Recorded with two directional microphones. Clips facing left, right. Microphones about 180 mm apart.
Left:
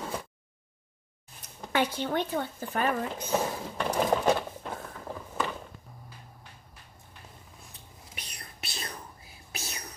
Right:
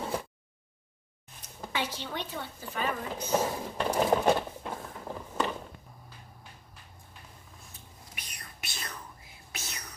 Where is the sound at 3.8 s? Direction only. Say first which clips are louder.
Even; 5° right (ahead or behind).